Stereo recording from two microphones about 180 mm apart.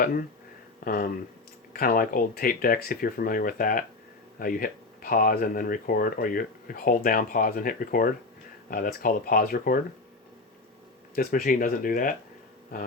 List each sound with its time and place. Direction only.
0.0 s speech: 50° left (ahead or behind)
11.1 s speech: 55° left (ahead or behind)